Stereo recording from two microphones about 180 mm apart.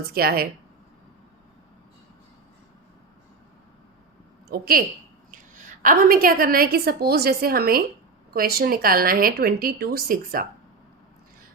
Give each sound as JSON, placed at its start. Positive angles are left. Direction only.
{"t": 0.1, "sound": "a woman's voice", "side_deg": -60}
{"t": 4.4, "sound": "a woman's voice", "side_deg": -60}